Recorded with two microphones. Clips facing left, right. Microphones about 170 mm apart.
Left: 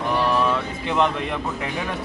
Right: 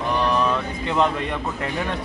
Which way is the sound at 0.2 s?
5° left (ahead or behind).